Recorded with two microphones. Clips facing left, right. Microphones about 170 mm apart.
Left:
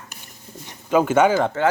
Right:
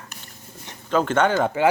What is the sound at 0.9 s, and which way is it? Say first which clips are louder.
Speech: left 3 dB; 10° left (ahead or behind).